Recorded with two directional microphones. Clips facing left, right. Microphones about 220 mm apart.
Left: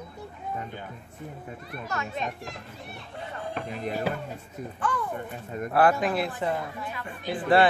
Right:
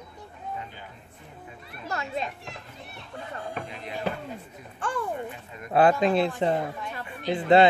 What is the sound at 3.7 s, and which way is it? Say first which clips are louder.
Speech: left 5 dB; 45° left (ahead or behind).